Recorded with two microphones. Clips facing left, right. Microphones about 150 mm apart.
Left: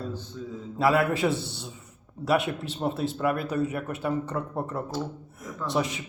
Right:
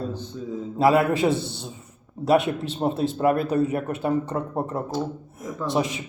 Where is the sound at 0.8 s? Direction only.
20° right (ahead or behind).